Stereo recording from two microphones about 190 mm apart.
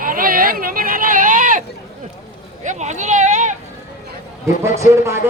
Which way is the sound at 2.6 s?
40° right (ahead or behind).